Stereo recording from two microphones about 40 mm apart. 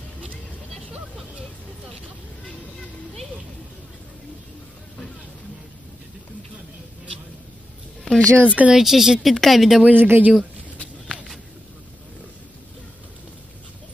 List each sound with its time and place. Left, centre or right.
8.2 s speech: left
8.5 s speech: right
8.7 s a woman's voice: centre
9.3 s speech: centre
9.9 s speech: right